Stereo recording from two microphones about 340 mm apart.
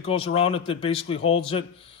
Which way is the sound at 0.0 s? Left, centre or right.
Centre.